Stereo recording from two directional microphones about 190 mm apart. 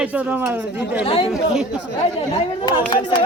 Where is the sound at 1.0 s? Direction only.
30° left (ahead or behind).